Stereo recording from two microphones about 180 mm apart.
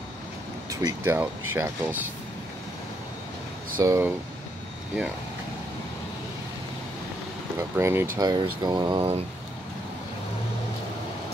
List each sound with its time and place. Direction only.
0.7 s speech: 15° right (ahead or behind)
3.8 s speech: 15° right (ahead or behind)
7.5 s speech: 15° right (ahead or behind)
8.2 s speech: 25° right (ahead or behind)